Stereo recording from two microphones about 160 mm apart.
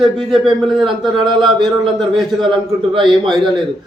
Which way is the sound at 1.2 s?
30° right (ahead or behind).